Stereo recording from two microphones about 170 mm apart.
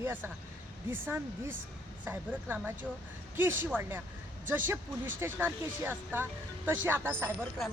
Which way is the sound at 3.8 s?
15° right (ahead or behind).